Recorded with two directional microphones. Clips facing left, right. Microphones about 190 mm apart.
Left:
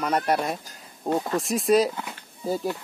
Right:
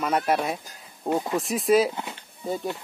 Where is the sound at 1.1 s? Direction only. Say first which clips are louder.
Even; 15° right (ahead or behind).